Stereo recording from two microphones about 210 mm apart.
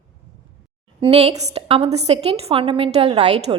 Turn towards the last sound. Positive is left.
turn(degrees=-30)  # may be behind; listen again after turning